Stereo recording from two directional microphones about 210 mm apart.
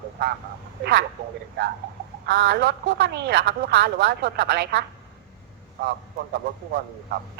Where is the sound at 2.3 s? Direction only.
50° right (ahead or behind).